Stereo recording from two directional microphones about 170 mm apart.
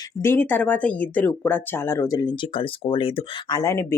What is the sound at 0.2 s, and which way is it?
Speech, 10° left (ahead or behind).